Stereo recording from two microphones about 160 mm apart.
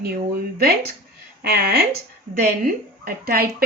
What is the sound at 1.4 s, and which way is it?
Speech, 90° right.